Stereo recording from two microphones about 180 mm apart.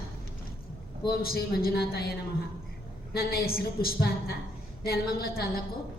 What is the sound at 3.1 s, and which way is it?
A woman's voice, 55° left (ahead or behind).